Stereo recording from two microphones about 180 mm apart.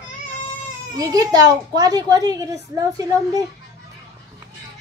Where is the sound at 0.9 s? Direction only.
20° right (ahead or behind).